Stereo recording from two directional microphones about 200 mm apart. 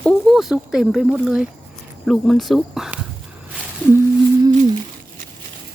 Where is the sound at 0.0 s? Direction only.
Centre (ahead or behind).